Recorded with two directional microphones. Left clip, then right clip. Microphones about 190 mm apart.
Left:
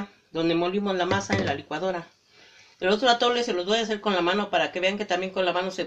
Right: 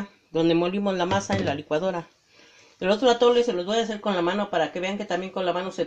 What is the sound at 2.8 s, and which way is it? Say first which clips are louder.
Speech: right 2 dB; 30° right (ahead or behind).